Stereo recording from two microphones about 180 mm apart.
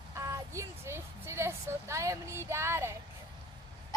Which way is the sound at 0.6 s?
15° right (ahead or behind).